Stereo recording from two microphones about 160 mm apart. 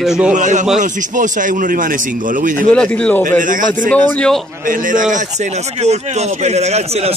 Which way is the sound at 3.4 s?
55° right (ahead or behind).